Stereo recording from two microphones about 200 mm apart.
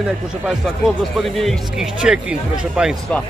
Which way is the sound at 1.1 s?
Centre (ahead or behind).